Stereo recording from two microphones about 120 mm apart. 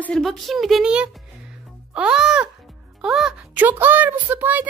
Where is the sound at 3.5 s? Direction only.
15° right (ahead or behind).